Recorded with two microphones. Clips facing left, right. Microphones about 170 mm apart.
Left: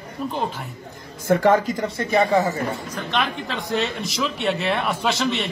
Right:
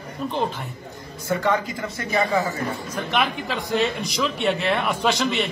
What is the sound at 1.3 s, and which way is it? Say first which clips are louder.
Speech: left 6 dB; 45° left (ahead or behind).